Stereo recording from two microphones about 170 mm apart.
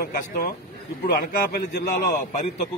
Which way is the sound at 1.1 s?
65° left (ahead or behind).